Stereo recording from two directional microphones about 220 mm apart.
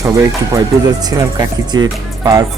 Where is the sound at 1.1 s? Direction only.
15° right (ahead or behind).